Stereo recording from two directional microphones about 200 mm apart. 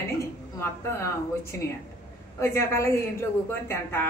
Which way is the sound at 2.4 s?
15° left (ahead or behind).